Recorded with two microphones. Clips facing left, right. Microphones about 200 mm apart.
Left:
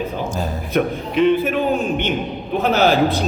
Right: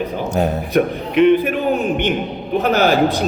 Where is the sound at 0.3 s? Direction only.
65° right (ahead or behind).